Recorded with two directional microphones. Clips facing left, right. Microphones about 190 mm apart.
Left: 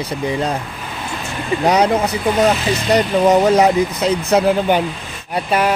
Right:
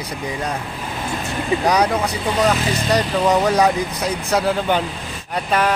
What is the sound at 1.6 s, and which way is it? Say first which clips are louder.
Speech: left 5 dB; 25° left (ahead or behind).